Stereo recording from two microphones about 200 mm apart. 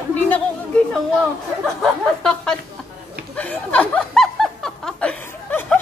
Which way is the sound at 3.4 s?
5° left (ahead or behind).